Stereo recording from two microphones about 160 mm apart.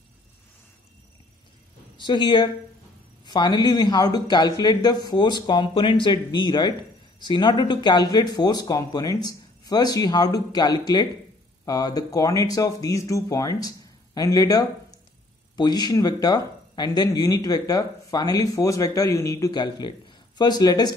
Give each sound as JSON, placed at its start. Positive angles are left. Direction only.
{"t": 2.0, "sound": "speech", "side_deg": 30}